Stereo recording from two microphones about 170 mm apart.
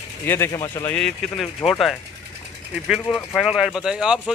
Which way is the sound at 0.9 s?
5° left (ahead or behind).